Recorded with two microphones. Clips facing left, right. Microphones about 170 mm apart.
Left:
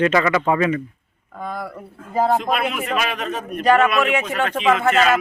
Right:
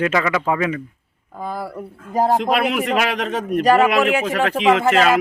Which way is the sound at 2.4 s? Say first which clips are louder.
Right 4 dB; 80° right.